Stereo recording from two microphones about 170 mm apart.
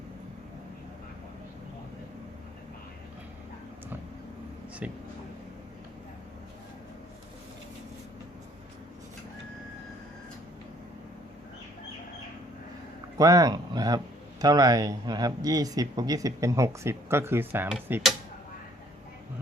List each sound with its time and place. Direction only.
4.8 s speech: 10° right (ahead or behind)
13.1 s speech: 20° right (ahead or behind)